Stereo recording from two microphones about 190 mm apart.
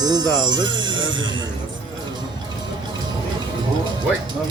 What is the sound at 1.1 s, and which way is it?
Speech, 85° right.